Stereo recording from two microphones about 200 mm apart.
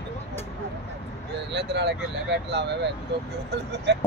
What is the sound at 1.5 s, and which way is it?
Speech, 60° right (ahead or behind).